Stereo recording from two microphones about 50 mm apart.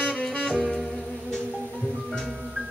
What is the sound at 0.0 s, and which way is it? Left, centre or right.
Saxophone, centre.